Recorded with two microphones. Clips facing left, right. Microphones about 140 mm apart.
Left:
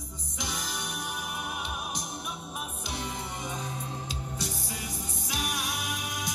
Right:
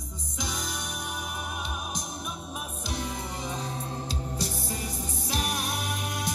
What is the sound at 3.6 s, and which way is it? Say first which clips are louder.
Music: right 2 dB; 30° right (ahead or behind).